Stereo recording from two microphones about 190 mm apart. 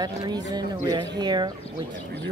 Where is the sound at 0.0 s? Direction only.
20° right (ahead or behind).